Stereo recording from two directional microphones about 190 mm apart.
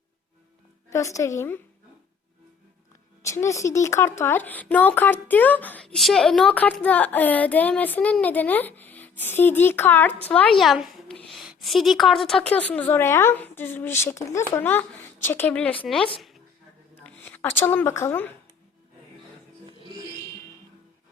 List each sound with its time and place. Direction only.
0.9 s a woman's voice: 15° left (ahead or behind)
3.2 s a woman's voice: 15° left (ahead or behind)
19.8 s music: 20° right (ahead or behind)